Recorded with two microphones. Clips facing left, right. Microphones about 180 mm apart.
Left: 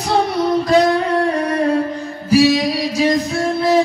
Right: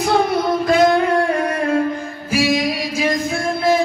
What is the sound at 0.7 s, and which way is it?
Music, 35° left (ahead or behind).